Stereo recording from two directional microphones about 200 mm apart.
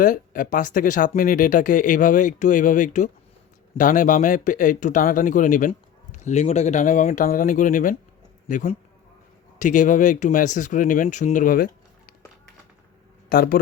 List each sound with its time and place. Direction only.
0.0 s speech: 40° left (ahead or behind)
13.3 s a man's voice: 50° left (ahead or behind)